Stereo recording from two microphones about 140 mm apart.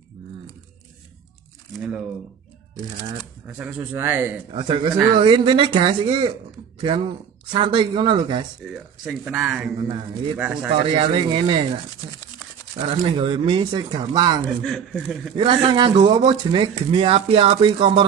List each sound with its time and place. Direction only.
3.4 s speech: 15° right (ahead or behind)
4.5 s speech: 35° right (ahead or behind)
9.1 s speech: 10° right (ahead or behind)
9.8 s speech: 40° right (ahead or behind)
10.3 s speech: 10° right (ahead or behind)
10.8 s speech: 40° right (ahead or behind)
14.6 s speech: 5° left (ahead or behind)
15.3 s speech: 35° right (ahead or behind)